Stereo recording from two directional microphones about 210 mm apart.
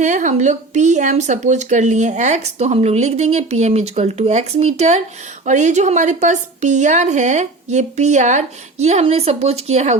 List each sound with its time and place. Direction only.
0.0 s speech: 35° right (ahead or behind)